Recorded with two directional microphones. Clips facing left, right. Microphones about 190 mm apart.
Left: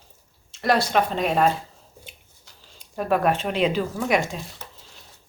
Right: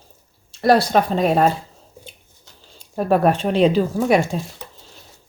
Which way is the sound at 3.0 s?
35° right (ahead or behind).